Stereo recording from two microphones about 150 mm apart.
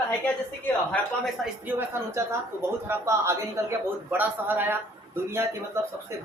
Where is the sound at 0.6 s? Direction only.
10° left (ahead or behind).